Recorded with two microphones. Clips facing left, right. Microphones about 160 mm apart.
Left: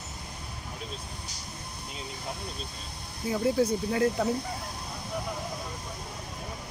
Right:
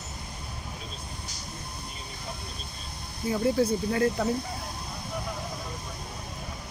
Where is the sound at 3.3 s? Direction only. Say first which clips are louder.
Right 1 dB; 5° left (ahead or behind).